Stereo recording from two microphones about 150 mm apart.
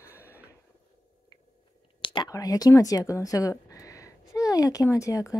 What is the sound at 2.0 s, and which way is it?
Speech, 30° left (ahead or behind).